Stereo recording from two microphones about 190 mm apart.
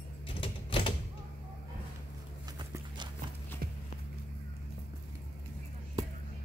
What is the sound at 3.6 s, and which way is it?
Walk, 55° right (ahead or behind).